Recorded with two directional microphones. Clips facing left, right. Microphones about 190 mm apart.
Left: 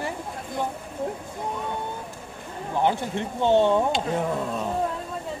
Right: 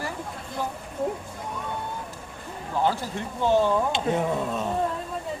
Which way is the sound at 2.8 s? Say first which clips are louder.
Left 2 dB; 20° left (ahead or behind).